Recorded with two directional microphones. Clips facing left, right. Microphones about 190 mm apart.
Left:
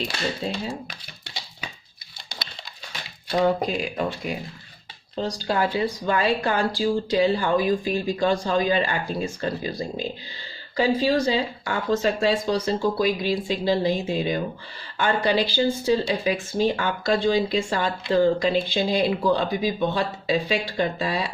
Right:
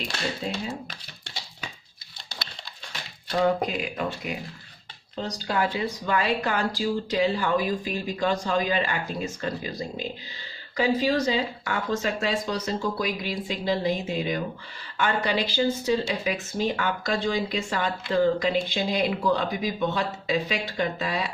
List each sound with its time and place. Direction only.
0.7 s typing: 15° left (ahead or behind)
3.4 s speech: 35° left (ahead or behind)